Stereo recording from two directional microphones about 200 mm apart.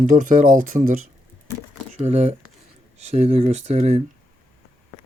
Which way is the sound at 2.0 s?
35° right (ahead or behind).